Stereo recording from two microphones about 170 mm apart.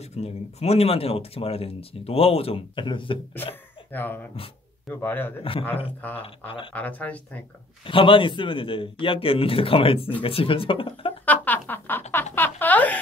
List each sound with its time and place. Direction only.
0.1 s speech: 40° left (ahead or behind)
3.9 s speech: 10° left (ahead or behind)
5.4 s speech: 35° left (ahead or behind)
6.7 s speech: 10° left (ahead or behind)
7.8 s speech: 30° left (ahead or behind)
11.2 s a sound: 10° left (ahead or behind)